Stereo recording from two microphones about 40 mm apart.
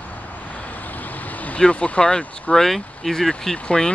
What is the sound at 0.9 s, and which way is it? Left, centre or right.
Vehicle, left.